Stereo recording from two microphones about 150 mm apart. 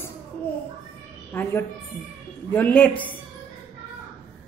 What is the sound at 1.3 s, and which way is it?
A woman's voice, 15° left (ahead or behind).